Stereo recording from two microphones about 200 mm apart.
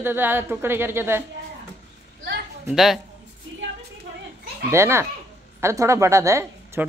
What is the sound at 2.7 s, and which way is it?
Speech, centre (ahead or behind).